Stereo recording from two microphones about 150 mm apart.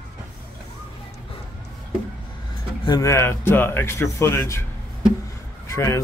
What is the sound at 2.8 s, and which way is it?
Speech, 25° left (ahead or behind).